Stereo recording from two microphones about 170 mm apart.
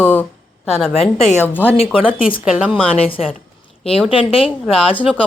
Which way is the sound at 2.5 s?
5° right (ahead or behind).